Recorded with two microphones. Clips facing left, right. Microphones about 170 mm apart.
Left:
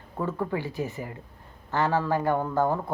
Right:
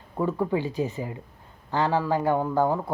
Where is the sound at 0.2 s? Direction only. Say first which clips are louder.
Right 4 dB; 15° right (ahead or behind).